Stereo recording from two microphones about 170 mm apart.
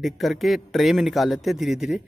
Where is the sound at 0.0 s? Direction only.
Centre (ahead or behind).